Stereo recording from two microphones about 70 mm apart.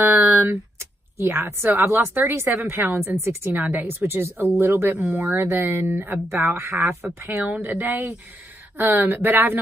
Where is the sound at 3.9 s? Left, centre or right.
Right.